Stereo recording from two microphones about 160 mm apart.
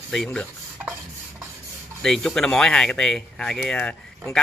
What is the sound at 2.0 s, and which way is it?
Speech, 5° left (ahead or behind).